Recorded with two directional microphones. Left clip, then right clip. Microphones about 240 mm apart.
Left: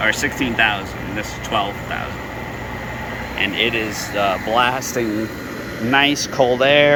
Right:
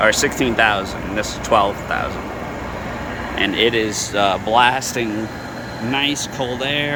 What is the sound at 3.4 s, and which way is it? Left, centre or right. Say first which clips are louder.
Speech: right 2 dB; right.